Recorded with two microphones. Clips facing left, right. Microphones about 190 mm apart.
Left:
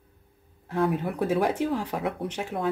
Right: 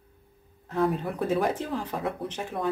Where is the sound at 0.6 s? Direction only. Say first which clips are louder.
Left 1 dB; 5° left (ahead or behind).